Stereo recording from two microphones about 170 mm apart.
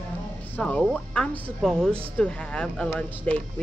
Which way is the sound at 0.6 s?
10° left (ahead or behind).